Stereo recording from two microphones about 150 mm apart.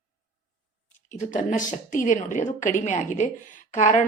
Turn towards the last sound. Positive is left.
turn(degrees=55)  # may be behind; listen again after turning